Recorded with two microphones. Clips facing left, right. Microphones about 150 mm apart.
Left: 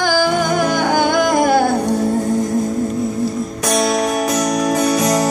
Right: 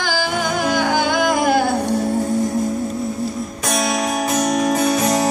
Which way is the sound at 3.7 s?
40° left (ahead or behind).